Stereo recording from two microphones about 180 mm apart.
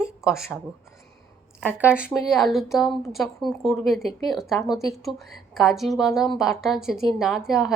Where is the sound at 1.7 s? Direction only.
10° right (ahead or behind).